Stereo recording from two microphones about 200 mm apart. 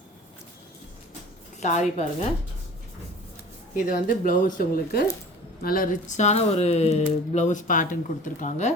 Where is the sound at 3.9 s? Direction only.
45° left (ahead or behind).